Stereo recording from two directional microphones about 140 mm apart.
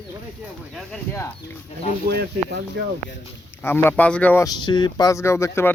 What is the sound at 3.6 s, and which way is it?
Speech, 15° left (ahead or behind).